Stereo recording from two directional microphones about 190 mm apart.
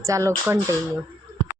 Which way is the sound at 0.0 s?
15° right (ahead or behind).